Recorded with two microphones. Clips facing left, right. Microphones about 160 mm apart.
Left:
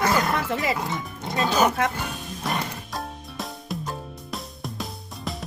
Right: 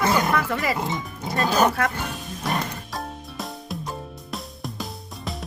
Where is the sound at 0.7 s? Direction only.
20° right (ahead or behind).